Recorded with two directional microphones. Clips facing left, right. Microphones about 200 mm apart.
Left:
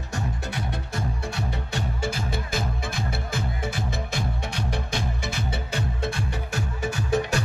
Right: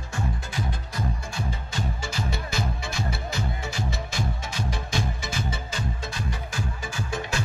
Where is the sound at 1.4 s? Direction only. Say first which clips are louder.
Left 1 dB; 60° left (ahead or behind).